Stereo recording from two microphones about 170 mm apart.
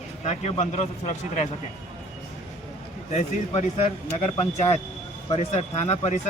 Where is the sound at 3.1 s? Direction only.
40° left (ahead or behind).